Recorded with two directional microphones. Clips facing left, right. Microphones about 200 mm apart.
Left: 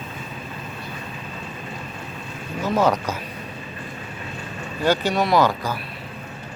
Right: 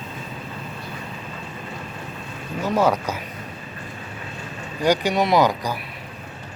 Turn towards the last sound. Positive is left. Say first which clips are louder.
# even
turn(degrees=-15)  # may be behind; listen again after turning